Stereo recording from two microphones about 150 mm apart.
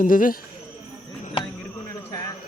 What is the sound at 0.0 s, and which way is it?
Speech, 65° left (ahead or behind).